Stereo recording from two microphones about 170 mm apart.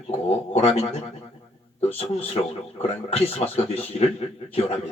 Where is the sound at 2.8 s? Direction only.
35° left (ahead or behind).